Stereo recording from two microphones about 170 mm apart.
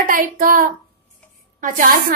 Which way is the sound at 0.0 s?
55° right (ahead or behind).